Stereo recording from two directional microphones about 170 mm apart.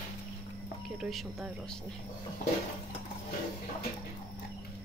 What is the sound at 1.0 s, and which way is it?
Speech, centre (ahead or behind).